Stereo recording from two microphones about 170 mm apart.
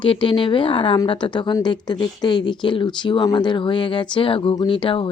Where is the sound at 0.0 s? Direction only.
30° left (ahead or behind).